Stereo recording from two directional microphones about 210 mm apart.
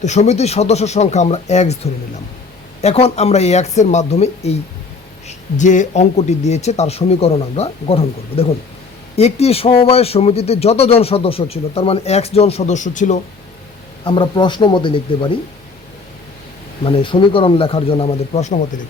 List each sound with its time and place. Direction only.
0.0 s a man's voice: 35° left (ahead or behind)
14.0 s a man's voice: 20° left (ahead or behind)
16.8 s a man's voice: 25° left (ahead or behind)